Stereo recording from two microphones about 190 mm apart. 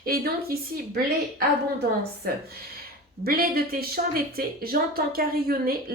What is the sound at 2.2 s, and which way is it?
A woman's voice, 55° right (ahead or behind).